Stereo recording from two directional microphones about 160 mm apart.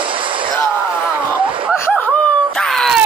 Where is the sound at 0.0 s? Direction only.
30° right (ahead or behind).